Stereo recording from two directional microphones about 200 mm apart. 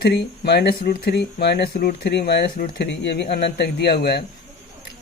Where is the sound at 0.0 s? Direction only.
55° left (ahead or behind).